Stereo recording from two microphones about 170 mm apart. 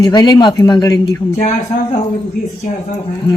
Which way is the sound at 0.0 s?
25° left (ahead or behind).